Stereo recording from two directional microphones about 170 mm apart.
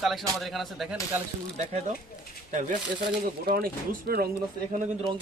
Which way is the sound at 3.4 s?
60° right (ahead or behind).